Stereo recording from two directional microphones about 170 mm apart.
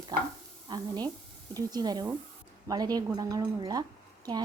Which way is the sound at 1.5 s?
25° right (ahead or behind).